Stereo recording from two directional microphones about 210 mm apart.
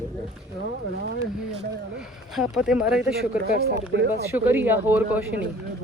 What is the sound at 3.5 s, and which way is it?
Speech, 50° right (ahead or behind).